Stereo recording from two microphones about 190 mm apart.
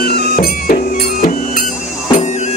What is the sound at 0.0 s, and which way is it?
Music, 50° left (ahead or behind).